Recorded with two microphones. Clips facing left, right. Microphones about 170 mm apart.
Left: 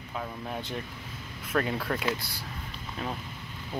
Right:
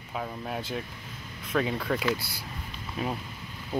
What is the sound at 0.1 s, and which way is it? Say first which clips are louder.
Speech: right 2 dB; 5° right (ahead or behind).